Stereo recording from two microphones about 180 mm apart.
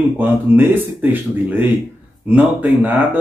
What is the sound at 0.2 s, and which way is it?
Speech, 10° right (ahead or behind).